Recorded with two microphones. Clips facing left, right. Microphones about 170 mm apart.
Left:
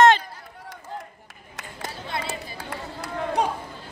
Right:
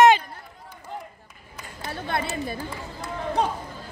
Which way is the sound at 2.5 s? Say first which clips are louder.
Right 1 dB; 70° left (ahead or behind).